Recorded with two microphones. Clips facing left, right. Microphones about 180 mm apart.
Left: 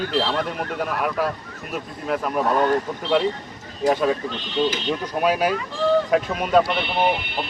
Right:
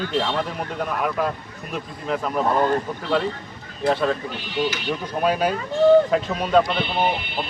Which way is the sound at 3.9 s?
10° left (ahead or behind).